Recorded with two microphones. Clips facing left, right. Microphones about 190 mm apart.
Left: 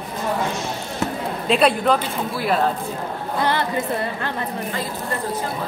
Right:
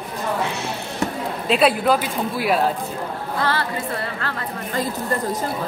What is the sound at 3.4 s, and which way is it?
Music, 20° left (ahead or behind).